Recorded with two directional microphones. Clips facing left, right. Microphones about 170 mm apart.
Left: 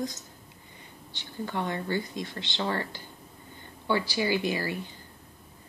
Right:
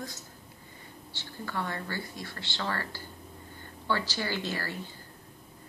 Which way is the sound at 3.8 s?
15° left (ahead or behind).